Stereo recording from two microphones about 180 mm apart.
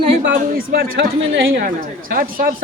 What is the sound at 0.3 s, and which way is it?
Speech, 65° right (ahead or behind).